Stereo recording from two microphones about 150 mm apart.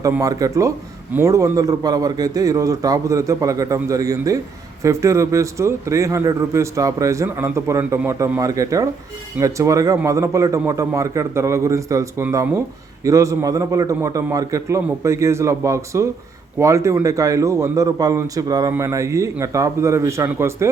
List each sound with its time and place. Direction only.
0.2 s a man's voice: 25° right (ahead or behind)